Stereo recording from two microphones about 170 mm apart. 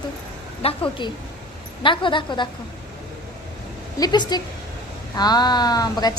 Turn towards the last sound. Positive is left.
turn(degrees=20)  # may be behind; listen again after turning